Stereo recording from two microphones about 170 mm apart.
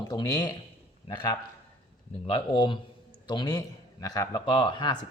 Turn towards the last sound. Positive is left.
turn(degrees=25)  # may be behind; listen again after turning